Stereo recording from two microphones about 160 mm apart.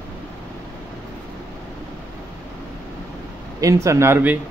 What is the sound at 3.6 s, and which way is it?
Speech, 20° right (ahead or behind).